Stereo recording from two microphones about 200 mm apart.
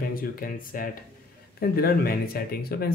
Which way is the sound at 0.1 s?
45° left (ahead or behind).